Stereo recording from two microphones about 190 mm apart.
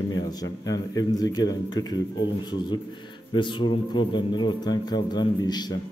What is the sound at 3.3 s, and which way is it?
A man's voice, 25° left (ahead or behind).